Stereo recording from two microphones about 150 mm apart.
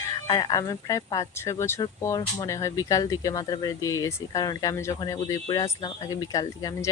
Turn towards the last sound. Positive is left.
turn(degrees=25)  # may be behind; listen again after turning